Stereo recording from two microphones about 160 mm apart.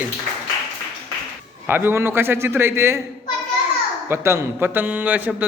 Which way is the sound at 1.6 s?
15° right (ahead or behind).